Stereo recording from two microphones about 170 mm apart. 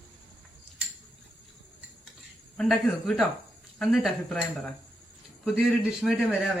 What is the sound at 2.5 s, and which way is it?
A woman's voice, 5° left (ahead or behind).